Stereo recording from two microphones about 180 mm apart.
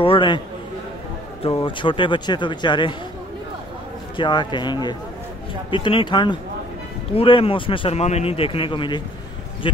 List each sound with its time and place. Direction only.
0.0 s a man's voice: 30° left (ahead or behind)
1.4 s speech: 30° left (ahead or behind)
4.2 s speech: 25° left (ahead or behind)